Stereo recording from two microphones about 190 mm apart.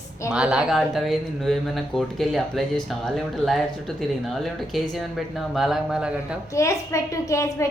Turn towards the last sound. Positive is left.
turn(degrees=15)  # may be behind; listen again after turning